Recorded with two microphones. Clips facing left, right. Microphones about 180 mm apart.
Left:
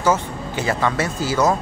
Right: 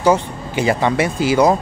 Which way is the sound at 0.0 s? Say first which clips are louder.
Right 4 dB; 15° right (ahead or behind).